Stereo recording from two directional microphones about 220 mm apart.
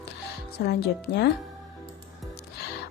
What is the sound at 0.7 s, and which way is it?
Speech, 50° left (ahead or behind).